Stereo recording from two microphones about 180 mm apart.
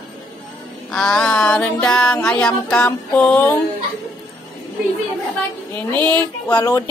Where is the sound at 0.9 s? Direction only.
5° left (ahead or behind).